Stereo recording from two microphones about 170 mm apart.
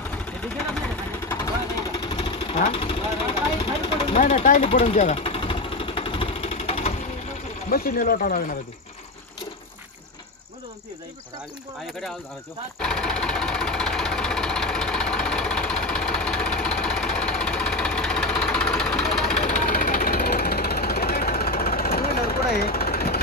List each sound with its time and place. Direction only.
1.3 s vehicle: 20° left (ahead or behind)
2.7 s speech: 30° left (ahead or behind)
3.8 s vehicle: 35° left (ahead or behind)
4.2 s vehicle: 45° left (ahead or behind)
7.7 s speech: 60° left (ahead or behind)
12.7 s engine: 5° left (ahead or behind)
19.4 s vehicle: 45° left (ahead or behind)
19.7 s jackhammer: 55° left (ahead or behind)